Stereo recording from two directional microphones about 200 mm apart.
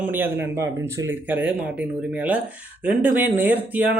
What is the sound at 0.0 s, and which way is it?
Speech, 10° right (ahead or behind).